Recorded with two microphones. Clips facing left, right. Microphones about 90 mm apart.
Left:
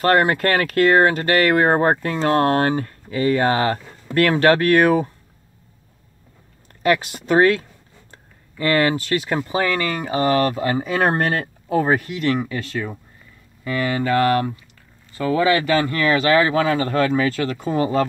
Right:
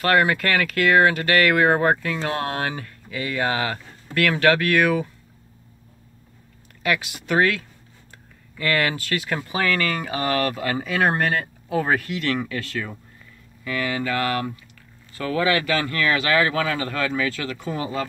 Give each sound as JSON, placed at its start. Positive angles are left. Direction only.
{"t": 0.0, "sound": "speech", "side_deg": 35}
{"t": 6.8, "sound": "speech", "side_deg": 35}
{"t": 11.8, "sound": "speech", "side_deg": 20}
{"t": 13.7, "sound": "speech", "side_deg": 35}